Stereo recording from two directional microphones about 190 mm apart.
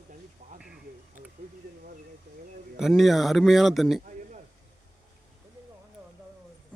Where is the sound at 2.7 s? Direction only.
Centre (ahead or behind).